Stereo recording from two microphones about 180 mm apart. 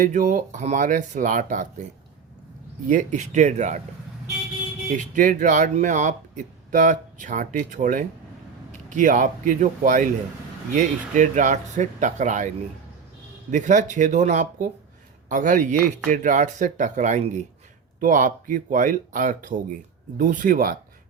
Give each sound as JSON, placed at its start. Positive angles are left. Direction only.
{"t": 0.0, "sound": "speech", "side_deg": -45}
{"t": 2.9, "sound": "speech", "side_deg": -40}
{"t": 4.9, "sound": "speech", "side_deg": -50}
{"t": 13.5, "sound": "speech", "side_deg": -45}